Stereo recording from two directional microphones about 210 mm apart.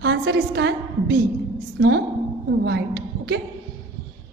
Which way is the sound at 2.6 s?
55° right (ahead or behind).